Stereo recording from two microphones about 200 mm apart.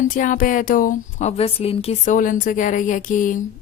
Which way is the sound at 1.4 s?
30° left (ahead or behind).